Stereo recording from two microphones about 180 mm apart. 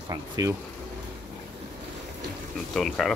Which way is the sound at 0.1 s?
20° right (ahead or behind).